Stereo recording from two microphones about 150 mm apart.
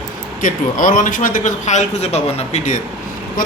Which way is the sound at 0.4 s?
65° left (ahead or behind).